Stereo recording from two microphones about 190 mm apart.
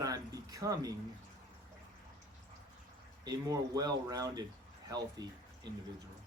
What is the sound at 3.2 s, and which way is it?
Speech, 20° right (ahead or behind).